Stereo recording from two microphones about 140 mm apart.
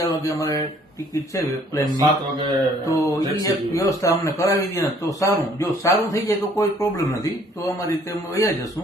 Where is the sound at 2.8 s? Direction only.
20° left (ahead or behind).